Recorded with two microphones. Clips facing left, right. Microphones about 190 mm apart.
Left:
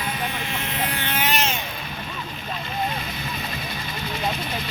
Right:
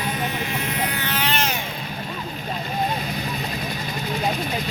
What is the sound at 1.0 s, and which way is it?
Vehicle, 20° left (ahead or behind).